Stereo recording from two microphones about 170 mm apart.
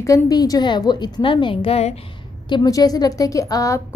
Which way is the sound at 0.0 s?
20° left (ahead or behind).